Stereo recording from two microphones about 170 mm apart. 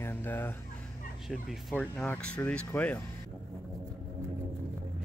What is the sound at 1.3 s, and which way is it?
Speech, centre (ahead or behind).